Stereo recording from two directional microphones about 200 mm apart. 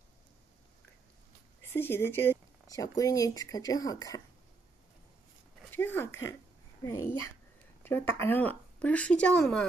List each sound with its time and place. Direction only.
1.6 s speech: 10° left (ahead or behind)
5.7 s speech: 10° left (ahead or behind)